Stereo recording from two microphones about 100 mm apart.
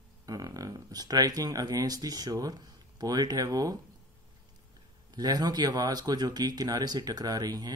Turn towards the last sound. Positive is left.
turn(degrees=-40)  # may be behind; listen again after turning